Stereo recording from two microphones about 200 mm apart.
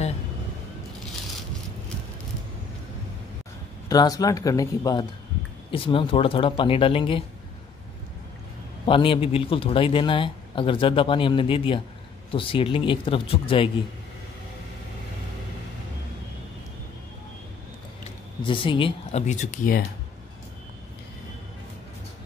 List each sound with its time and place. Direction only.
3.9 s a man's voice: 20° left (ahead or behind)
8.8 s a man's voice: 25° left (ahead or behind)
18.4 s speech: 25° left (ahead or behind); by 19.8 s 40° left (ahead or behind)